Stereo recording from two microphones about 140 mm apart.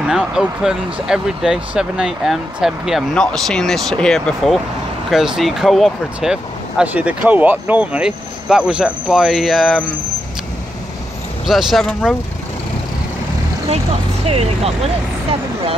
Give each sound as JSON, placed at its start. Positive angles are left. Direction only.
{"t": 0.0, "sound": "speech", "side_deg": -5}
{"t": 11.4, "sound": "speech", "side_deg": 0}
{"t": 14.2, "sound": "speech", "side_deg": -50}